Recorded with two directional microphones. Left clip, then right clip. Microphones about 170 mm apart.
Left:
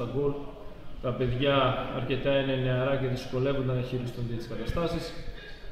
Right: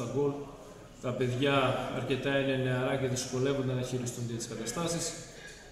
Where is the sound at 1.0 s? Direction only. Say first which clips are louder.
Left 3 dB; 5° right (ahead or behind).